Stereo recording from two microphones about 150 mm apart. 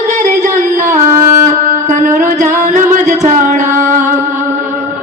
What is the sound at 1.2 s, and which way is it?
Music, 60° right (ahead or behind).